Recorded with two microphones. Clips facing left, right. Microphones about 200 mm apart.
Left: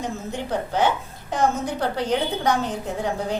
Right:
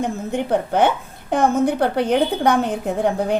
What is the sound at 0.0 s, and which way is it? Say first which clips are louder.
A woman's voice: right 6 dB; 60° right (ahead or behind).